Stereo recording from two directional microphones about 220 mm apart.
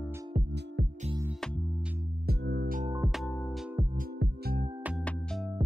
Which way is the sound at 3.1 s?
5° left (ahead or behind).